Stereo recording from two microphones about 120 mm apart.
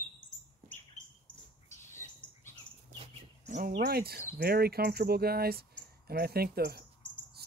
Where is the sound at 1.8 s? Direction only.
20° left (ahead or behind).